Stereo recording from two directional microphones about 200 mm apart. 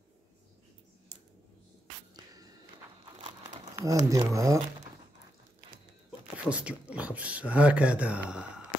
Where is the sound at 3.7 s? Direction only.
15° right (ahead or behind).